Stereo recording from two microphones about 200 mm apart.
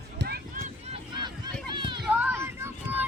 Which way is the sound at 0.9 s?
25° right (ahead or behind).